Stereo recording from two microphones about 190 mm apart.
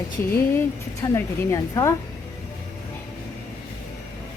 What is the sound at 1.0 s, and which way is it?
Speech, 15° left (ahead or behind).